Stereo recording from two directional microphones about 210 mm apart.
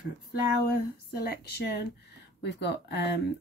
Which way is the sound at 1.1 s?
50° left (ahead or behind).